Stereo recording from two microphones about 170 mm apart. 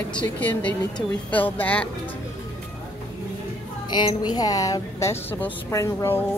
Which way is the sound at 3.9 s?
25° left (ahead or behind).